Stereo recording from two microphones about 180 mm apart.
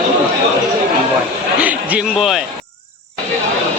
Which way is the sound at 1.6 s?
10° right (ahead or behind).